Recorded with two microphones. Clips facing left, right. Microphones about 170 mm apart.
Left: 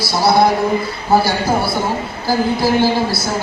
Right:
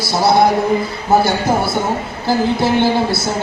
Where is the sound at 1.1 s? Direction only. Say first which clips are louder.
Right 1 dB; 25° right (ahead or behind).